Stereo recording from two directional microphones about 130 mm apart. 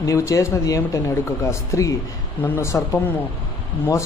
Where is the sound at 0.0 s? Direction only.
25° left (ahead or behind).